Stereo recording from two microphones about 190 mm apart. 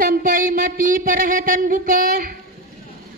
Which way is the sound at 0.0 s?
45° right (ahead or behind).